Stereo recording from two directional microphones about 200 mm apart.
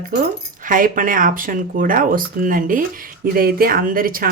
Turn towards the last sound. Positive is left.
turn(degrees=-45)  # may be behind; listen again after turning